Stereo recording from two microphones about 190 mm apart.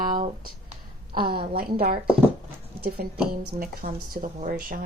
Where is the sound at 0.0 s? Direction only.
45° right (ahead or behind).